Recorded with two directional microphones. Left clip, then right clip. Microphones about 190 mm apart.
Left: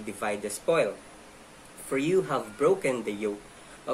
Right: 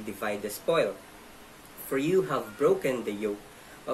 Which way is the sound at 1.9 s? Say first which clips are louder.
Even; 5° left (ahead or behind).